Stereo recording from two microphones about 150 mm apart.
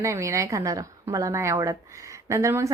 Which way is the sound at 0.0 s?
20° right (ahead or behind).